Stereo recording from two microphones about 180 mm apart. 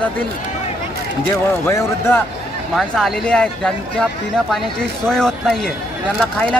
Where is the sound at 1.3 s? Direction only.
15° left (ahead or behind).